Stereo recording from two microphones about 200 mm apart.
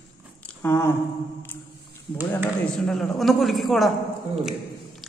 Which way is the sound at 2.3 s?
5° left (ahead or behind).